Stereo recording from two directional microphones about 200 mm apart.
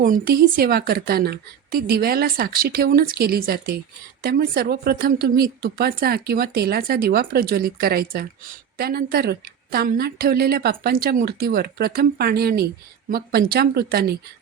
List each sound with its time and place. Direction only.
0.0 s speech: 45° right (ahead or behind)